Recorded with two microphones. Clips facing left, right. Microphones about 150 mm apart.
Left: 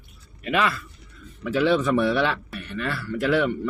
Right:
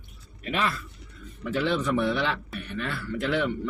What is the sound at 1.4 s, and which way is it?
A man's voice, 70° left (ahead or behind).